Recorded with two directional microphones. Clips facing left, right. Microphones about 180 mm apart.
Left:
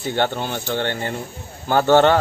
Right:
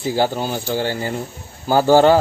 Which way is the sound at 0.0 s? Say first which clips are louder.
Right 2 dB; 5° right (ahead or behind).